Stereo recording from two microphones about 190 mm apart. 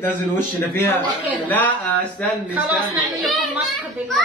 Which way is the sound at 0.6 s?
10° left (ahead or behind).